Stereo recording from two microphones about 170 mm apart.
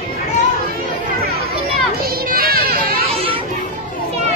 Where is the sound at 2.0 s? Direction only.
60° right (ahead or behind).